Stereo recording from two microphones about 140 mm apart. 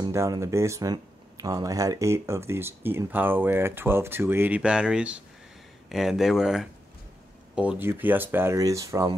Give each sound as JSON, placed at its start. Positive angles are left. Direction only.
{"t": 0.0, "sound": "speech", "side_deg": -25}